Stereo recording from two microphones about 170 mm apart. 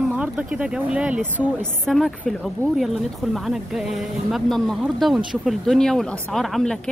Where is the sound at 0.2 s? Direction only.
5° right (ahead or behind).